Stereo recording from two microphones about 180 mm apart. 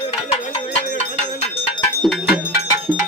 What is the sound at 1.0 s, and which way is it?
Cowbell, 40° left (ahead or behind).